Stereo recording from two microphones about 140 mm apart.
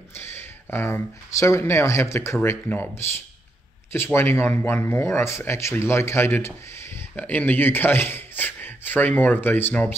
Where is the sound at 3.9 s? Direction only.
15° left (ahead or behind).